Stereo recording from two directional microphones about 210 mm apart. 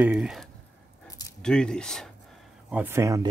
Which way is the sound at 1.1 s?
15° left (ahead or behind).